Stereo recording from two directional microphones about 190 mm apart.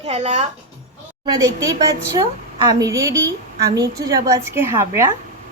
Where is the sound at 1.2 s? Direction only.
20° right (ahead or behind).